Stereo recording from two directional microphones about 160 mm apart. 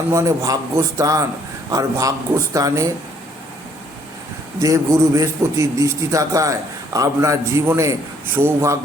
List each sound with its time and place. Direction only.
0.1 s a man's voice: 20° right (ahead or behind)
4.6 s a man's voice: 20° right (ahead or behind)